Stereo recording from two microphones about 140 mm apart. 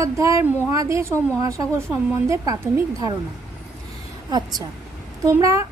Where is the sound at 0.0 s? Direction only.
20° right (ahead or behind).